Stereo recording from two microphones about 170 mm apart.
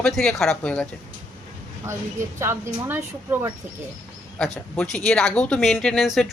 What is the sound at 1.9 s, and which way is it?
A woman's voice, 15° right (ahead or behind).